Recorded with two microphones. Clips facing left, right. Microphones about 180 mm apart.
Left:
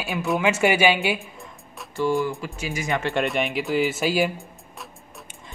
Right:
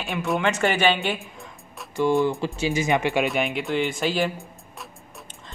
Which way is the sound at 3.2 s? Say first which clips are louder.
Even; centre (ahead or behind).